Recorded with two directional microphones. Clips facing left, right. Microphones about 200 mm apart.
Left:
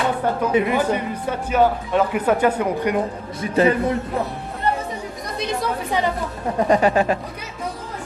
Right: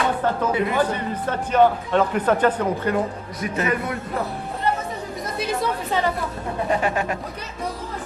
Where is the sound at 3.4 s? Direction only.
30° left (ahead or behind).